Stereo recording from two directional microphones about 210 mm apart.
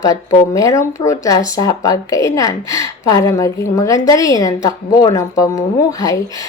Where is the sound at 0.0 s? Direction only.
15° left (ahead or behind).